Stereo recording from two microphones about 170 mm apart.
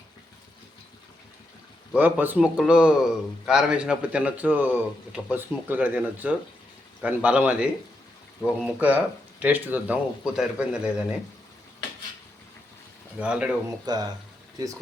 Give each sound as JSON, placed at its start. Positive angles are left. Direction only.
{"t": 1.9, "sound": "a man's voice", "side_deg": -10}
{"t": 8.4, "sound": "speech", "side_deg": 5}
{"t": 9.4, "sound": "a man's voice", "side_deg": -10}
{"t": 13.1, "sound": "speech", "side_deg": -5}
{"t": 13.8, "sound": "speech", "side_deg": -25}